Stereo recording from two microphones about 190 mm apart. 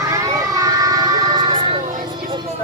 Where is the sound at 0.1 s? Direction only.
15° right (ahead or behind).